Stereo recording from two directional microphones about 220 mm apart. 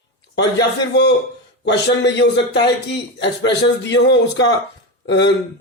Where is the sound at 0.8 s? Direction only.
50° left (ahead or behind).